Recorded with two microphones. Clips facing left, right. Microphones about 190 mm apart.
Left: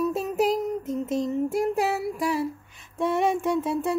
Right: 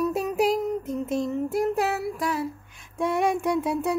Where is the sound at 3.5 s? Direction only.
15° right (ahead or behind).